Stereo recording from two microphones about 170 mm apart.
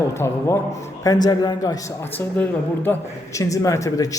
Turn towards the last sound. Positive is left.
turn(degrees=20)  # may be behind; listen again after turning